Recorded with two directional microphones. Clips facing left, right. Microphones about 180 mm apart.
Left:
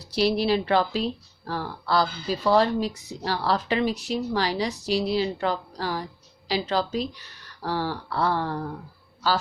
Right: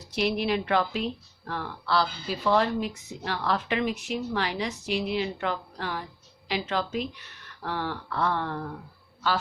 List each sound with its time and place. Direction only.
0.0 s speech: 35° left (ahead or behind)